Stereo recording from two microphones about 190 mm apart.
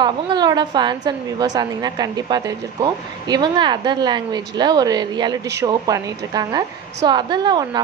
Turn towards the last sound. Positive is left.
turn(degrees=-20)  # may be behind; listen again after turning